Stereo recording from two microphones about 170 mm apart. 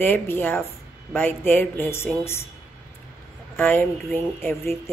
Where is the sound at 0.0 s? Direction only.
10° left (ahead or behind).